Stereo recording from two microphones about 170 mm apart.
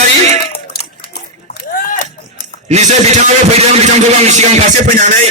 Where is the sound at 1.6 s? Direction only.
55° left (ahead or behind).